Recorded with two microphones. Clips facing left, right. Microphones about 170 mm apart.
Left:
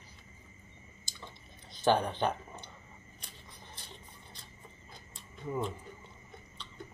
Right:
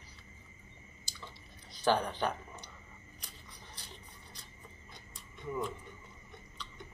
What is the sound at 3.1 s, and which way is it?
Scissors, 25° left (ahead or behind).